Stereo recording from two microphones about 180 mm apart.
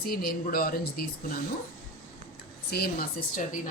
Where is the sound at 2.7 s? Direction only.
60° left (ahead or behind).